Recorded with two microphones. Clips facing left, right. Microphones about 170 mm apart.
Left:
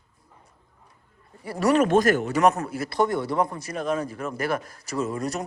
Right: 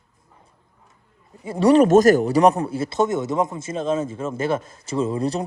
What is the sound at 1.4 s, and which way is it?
A man's voice, 25° right (ahead or behind).